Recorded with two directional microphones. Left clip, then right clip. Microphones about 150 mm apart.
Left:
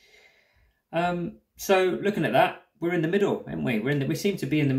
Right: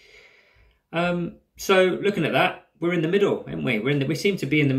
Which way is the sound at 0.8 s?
45° left (ahead or behind).